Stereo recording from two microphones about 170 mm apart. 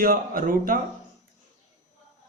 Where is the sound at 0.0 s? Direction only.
55° right (ahead or behind).